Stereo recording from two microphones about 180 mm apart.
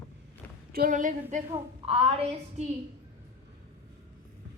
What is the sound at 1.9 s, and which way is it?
Speech, 35° right (ahead or behind).